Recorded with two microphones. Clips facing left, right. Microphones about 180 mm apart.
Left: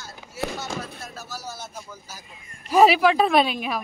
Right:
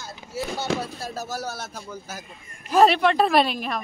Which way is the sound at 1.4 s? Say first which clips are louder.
Right 4 dB; 70° right (ahead or behind).